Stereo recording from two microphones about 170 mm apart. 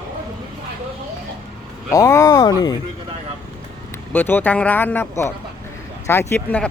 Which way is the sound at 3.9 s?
10° left (ahead or behind).